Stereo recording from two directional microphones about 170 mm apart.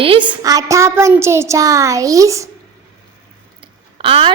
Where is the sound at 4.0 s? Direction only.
30° right (ahead or behind).